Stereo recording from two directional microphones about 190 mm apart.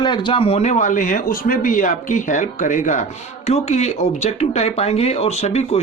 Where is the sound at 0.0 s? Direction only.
25° left (ahead or behind).